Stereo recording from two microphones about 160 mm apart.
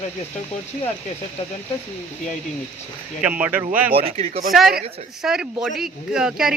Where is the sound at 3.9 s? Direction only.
40° right (ahead or behind).